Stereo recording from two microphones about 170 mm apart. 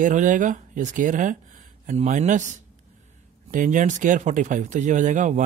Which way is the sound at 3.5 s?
50° right (ahead or behind).